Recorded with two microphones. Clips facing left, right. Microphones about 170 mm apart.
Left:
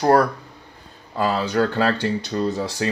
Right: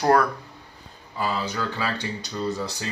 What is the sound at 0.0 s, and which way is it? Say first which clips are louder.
Speech: left 3 dB; 35° left (ahead or behind).